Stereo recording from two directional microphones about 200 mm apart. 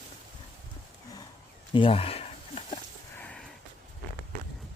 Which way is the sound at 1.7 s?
25° left (ahead or behind).